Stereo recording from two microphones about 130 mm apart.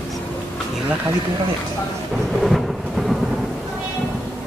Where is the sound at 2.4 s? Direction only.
Centre (ahead or behind).